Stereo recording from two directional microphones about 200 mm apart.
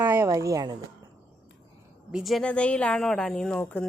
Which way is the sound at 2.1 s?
Centre (ahead or behind).